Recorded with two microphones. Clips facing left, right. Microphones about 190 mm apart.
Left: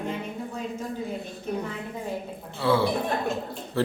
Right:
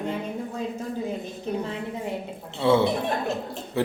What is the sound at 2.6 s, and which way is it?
Speech, 25° right (ahead or behind).